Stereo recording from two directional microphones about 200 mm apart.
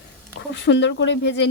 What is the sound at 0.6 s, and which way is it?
Speech, 60° left (ahead or behind).